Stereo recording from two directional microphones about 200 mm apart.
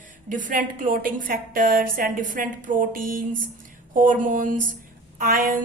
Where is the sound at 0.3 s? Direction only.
40° right (ahead or behind).